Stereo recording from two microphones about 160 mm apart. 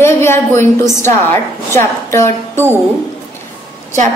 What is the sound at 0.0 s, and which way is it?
A woman's voice, 15° left (ahead or behind).